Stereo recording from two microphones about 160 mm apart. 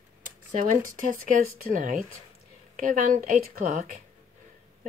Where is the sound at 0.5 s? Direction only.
55° right (ahead or behind).